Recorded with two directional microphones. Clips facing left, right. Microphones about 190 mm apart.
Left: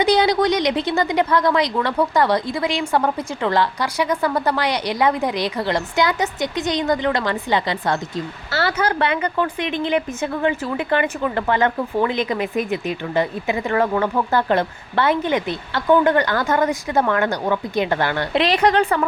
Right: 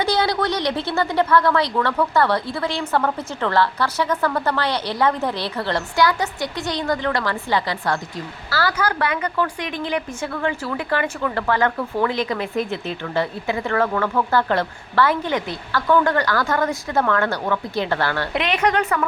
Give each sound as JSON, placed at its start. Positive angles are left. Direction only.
{"t": 0.0, "sound": "a woman's voice", "side_deg": 15}
{"t": 18.3, "sound": "a woman's voice", "side_deg": 35}